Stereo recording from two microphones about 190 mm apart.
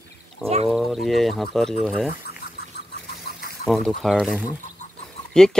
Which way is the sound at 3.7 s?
Centre (ahead or behind).